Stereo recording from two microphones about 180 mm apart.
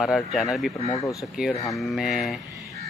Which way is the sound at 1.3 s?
5° right (ahead or behind).